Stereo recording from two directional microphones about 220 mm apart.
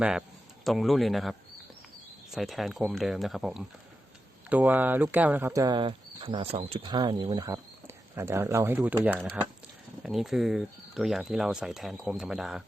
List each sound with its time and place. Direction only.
0.0 s speech: centre (ahead or behind)
10.0 s speech: centre (ahead or behind)